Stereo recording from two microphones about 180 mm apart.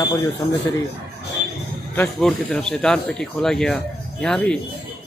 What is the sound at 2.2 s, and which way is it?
Speech, 5° left (ahead or behind).